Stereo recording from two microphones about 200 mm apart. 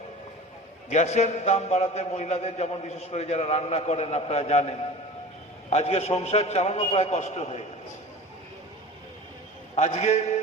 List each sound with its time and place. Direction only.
0.9 s a man's voice: 35° left (ahead or behind)
9.7 s a man's voice: 35° left (ahead or behind)